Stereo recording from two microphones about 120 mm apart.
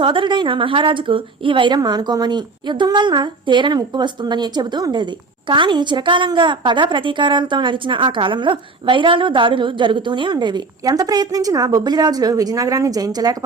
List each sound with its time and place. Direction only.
0.0 s a woman's voice: 45° right (ahead or behind)